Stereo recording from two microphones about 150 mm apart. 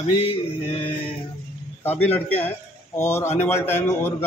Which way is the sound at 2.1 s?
10° left (ahead or behind).